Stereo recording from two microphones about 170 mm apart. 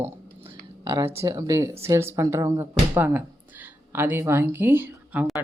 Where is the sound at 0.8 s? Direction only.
25° right (ahead or behind).